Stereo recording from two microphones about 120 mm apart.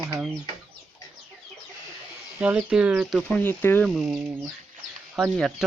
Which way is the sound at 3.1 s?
15° left (ahead or behind).